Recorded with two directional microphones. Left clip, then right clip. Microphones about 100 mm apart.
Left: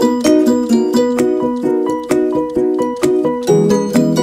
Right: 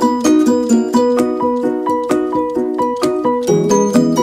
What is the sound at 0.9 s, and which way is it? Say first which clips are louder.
Music: right 2 dB; 15° left (ahead or behind).